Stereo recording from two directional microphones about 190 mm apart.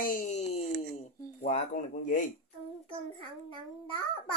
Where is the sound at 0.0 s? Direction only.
45° left (ahead or behind).